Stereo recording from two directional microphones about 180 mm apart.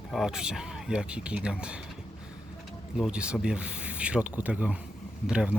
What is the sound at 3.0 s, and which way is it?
Speech, 5° right (ahead or behind).